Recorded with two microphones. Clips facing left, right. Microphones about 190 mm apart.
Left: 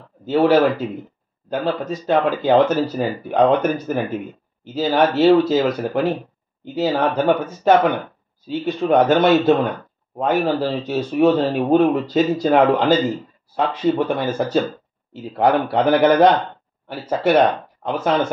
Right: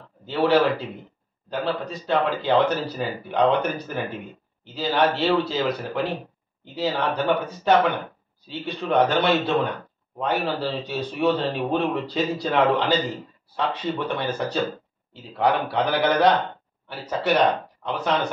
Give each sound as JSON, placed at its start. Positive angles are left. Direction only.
{"t": 0.3, "sound": "speech", "side_deg": 45}